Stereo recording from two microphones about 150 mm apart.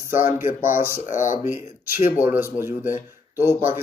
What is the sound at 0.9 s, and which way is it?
Speech, 60° left (ahead or behind).